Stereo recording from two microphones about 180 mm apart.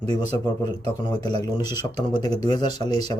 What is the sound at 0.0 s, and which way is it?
Speech, 35° right (ahead or behind).